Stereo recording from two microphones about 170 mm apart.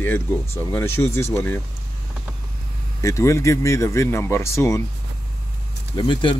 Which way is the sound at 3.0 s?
15° left (ahead or behind).